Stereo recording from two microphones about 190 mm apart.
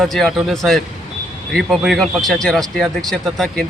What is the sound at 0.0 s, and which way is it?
Speech, centre (ahead or behind).